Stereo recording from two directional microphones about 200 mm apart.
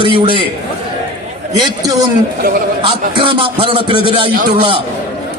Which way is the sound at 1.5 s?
20° right (ahead or behind).